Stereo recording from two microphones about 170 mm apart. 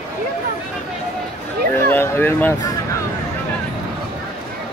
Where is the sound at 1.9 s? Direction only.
10° left (ahead or behind).